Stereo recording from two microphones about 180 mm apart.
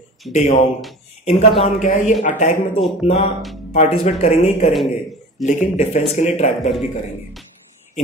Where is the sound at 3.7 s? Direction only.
35° left (ahead or behind).